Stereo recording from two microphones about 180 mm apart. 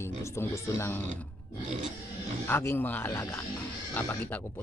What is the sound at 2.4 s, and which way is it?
Speech, 15° left (ahead or behind).